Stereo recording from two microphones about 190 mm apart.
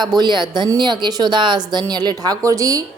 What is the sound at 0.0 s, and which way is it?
A woman's voice, 20° right (ahead or behind).